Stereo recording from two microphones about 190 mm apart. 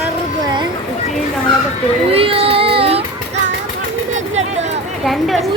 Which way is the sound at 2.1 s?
30° right (ahead or behind).